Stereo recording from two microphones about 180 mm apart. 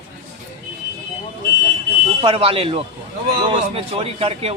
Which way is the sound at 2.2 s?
30° right (ahead or behind).